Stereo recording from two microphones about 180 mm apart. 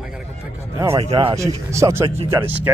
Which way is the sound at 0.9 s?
30° right (ahead or behind).